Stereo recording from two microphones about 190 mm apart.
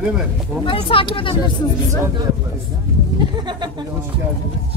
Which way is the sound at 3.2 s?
25° right (ahead or behind).